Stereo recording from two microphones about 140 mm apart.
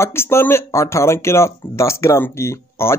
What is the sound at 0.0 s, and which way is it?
Speech, 15° left (ahead or behind).